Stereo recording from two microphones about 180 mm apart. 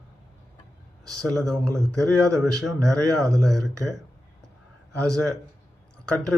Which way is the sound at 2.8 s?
20° right (ahead or behind).